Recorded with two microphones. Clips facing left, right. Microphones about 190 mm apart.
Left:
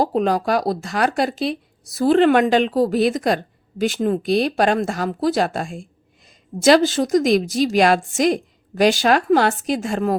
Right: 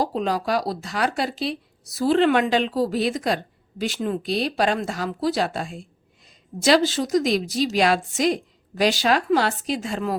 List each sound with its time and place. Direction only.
0.0 s speech: 55° left (ahead or behind)